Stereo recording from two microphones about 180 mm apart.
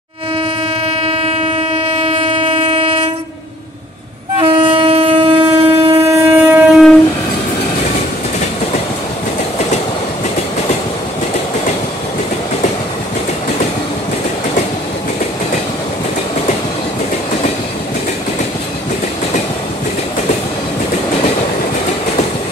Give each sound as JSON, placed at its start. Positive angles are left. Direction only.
{"t": 0.8, "sound": "train", "side_deg": -35}
{"t": 4.4, "sound": "shofar", "side_deg": -30}